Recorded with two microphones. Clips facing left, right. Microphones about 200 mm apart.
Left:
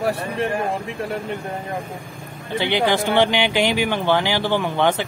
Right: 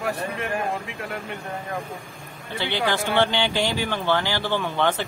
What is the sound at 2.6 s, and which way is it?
Speech, 15° left (ahead or behind).